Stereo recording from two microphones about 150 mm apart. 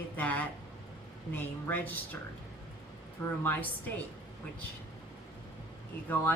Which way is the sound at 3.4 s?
10° left (ahead or behind).